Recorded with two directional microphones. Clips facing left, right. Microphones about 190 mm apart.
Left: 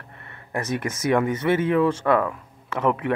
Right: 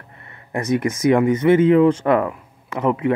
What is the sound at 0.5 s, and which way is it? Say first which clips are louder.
Speech: right 6 dB; 15° right (ahead or behind).